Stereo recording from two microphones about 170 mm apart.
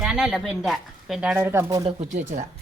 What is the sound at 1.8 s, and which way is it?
Speech, 40° right (ahead or behind).